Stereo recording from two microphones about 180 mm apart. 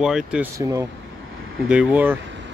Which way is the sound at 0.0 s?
5° right (ahead or behind).